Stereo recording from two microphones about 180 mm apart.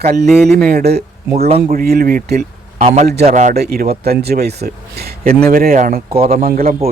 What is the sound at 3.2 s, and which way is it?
Speech, 40° right (ahead or behind).